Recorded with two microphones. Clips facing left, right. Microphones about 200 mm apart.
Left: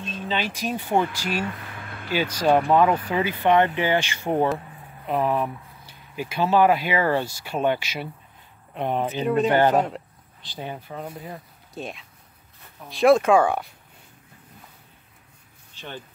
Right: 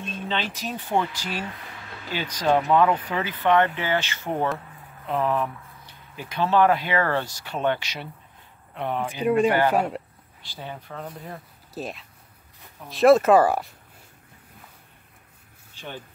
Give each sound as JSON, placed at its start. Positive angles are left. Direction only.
{"t": 0.3, "sound": "speech", "side_deg": 10}
{"t": 1.7, "sound": "a sound", "side_deg": 55}
{"t": 2.1, "sound": "speech", "side_deg": 10}
{"t": 9.1, "sound": "speech", "side_deg": -10}
{"t": 10.4, "sound": "speech", "side_deg": 15}
{"t": 11.1, "sound": "speech", "side_deg": 0}